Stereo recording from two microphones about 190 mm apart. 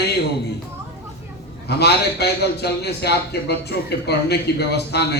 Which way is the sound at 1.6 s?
60° left (ahead or behind).